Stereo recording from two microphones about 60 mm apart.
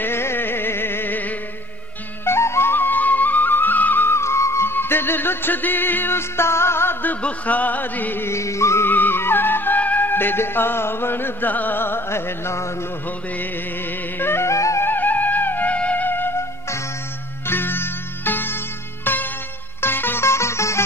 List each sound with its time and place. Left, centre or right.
0.0 s music: left
2.2 s flute: left
7.2 s music: left
8.3 s music: left
8.8 s music: left
14.1 s music: left
14.5 s music: left
14.9 s music: left
17.5 s music: left